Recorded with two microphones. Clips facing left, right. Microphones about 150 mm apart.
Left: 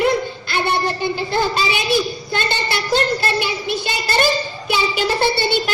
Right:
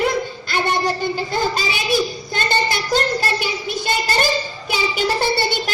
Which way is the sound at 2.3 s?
45° right (ahead or behind).